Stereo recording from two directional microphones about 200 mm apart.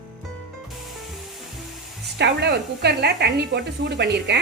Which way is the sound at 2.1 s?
55° right (ahead or behind).